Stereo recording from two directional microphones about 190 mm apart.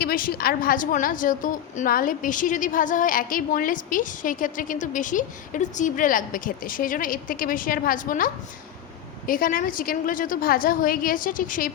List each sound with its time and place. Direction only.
0.0 s a woman's voice: 50° left (ahead or behind)